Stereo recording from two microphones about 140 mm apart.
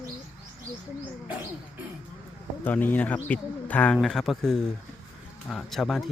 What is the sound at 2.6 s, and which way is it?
Speech, 10° left (ahead or behind).